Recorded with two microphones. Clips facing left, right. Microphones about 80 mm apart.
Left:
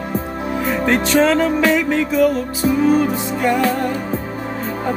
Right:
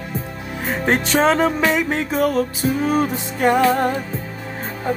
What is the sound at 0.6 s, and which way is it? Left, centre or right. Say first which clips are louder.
Music: left 1 dB; right.